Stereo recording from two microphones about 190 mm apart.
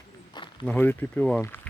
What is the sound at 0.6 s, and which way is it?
Speech, 10° left (ahead or behind).